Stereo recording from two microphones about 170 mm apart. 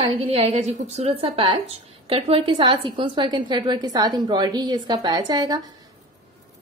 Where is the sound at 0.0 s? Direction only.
35° right (ahead or behind).